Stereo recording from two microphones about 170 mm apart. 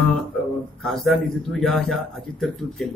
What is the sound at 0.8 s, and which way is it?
Speech, centre (ahead or behind).